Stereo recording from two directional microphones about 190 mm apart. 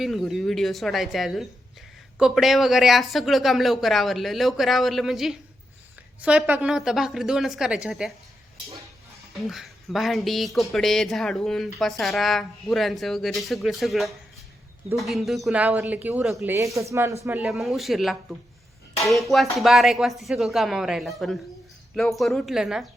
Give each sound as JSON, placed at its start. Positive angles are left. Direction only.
{"t": 0.0, "sound": "speech", "side_deg": 0}
{"t": 9.5, "sound": "speech", "side_deg": 0}
{"t": 17.2, "sound": "speech", "side_deg": -5}